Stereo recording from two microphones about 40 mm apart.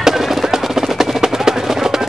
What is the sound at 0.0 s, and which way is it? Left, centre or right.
Percussion, centre.